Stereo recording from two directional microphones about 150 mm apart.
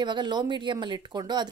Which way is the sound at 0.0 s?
30° right (ahead or behind).